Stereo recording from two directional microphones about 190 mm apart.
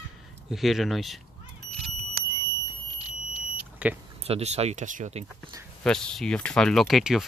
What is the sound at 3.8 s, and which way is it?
Speech, 10° right (ahead or behind).